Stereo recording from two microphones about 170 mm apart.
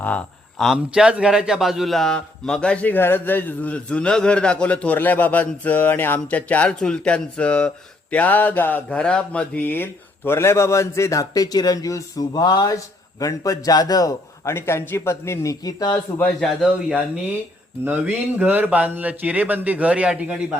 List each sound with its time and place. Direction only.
0.6 s speech: centre (ahead or behind); by 16.2 s 20° left (ahead or behind)
16.2 s a man's voice: centre (ahead or behind)